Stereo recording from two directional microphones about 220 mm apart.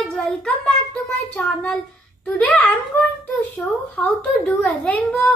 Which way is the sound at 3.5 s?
5° left (ahead or behind).